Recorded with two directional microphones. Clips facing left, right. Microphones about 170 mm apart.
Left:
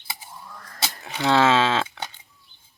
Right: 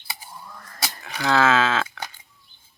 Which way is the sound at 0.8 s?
25° left (ahead or behind).